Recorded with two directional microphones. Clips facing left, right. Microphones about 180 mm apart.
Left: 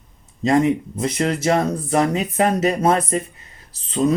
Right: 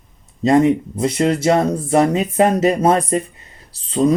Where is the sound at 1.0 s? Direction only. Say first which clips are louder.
Right 4 dB; 30° right (ahead or behind).